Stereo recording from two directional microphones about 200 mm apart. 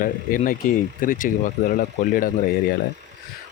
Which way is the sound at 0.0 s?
45° left (ahead or behind).